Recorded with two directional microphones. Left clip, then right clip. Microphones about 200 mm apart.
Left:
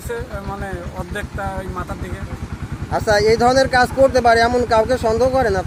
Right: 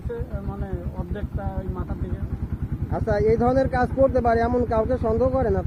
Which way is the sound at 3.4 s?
20° left (ahead or behind).